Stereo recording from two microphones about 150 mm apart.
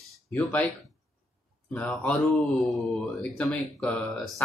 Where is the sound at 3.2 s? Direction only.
5° left (ahead or behind).